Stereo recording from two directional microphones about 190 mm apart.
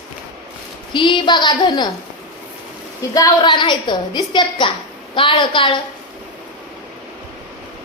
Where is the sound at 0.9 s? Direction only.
25° left (ahead or behind).